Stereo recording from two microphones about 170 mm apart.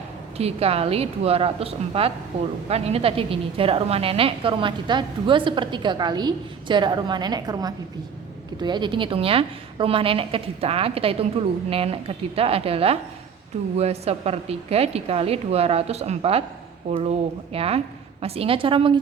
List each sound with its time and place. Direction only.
0.3 s a woman's voice: 35° right (ahead or behind)